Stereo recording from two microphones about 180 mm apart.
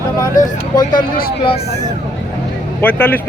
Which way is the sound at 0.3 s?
50° left (ahead or behind).